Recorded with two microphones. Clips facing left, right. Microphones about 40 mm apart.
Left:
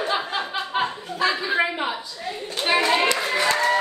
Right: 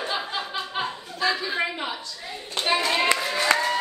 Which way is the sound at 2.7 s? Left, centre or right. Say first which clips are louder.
Left 3 dB; left.